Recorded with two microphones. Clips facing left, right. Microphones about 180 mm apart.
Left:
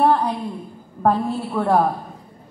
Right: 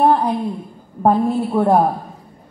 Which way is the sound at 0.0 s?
15° right (ahead or behind).